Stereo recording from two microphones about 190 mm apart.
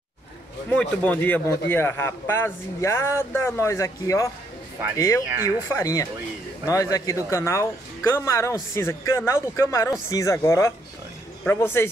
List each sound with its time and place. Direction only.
0.7 s speech: 5° left (ahead or behind)